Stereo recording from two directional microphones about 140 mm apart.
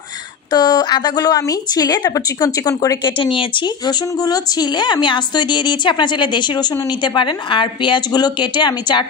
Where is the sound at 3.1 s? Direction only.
40° left (ahead or behind).